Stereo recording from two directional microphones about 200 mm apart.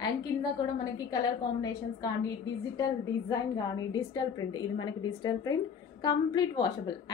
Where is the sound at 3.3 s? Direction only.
20° left (ahead or behind).